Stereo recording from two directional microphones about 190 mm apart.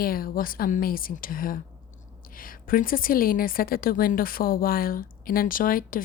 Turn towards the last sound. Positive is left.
turn(degrees=45)  # may be behind; listen again after turning